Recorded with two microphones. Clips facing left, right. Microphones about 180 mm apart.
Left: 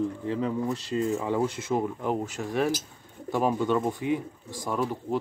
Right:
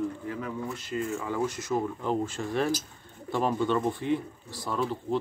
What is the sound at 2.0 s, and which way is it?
Speech, 10° left (ahead or behind).